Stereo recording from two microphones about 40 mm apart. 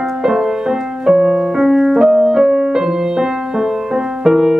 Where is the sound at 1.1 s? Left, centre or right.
Right.